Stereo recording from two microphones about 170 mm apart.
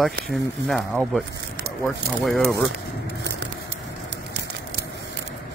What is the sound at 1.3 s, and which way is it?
Speech, 90° right.